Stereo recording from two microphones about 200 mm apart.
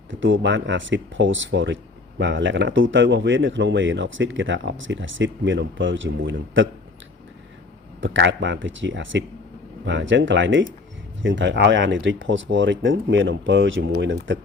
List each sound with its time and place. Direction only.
0.1 s speech: 65° right (ahead or behind)
8.0 s speech: 65° right (ahead or behind)